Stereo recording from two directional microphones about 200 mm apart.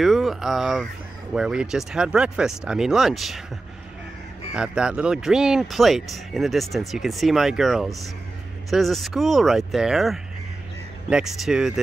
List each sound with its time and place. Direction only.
0.0 s speech: centre (ahead or behind)
4.6 s speech: 5° right (ahead or behind)